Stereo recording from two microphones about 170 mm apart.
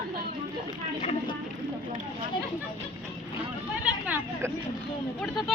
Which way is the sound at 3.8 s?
10° right (ahead or behind).